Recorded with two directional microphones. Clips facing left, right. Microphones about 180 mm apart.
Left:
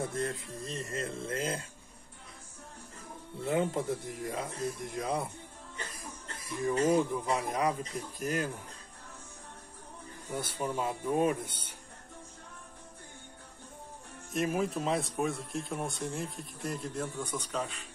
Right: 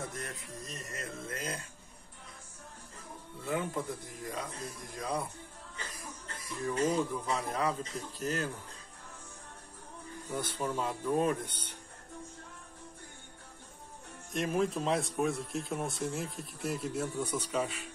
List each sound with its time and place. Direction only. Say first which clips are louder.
0.0 s speech: left 7 dB; 30° left (ahead or behind)
3.4 s speech: left 4 dB; 25° left (ahead or behind)
6.6 s speech: left 3 dB; 15° left (ahead or behind)
10.3 s speech: even; 10° left (ahead or behind)
14.3 s speech: even; 5° left (ahead or behind)